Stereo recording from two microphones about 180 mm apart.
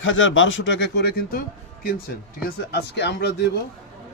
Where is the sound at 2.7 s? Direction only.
70° left (ahead or behind).